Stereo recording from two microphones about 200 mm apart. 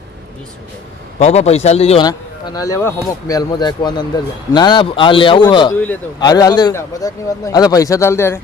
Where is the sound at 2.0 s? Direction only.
20° left (ahead or behind).